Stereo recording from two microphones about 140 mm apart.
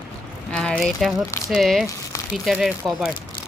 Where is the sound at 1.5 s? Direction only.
Centre (ahead or behind).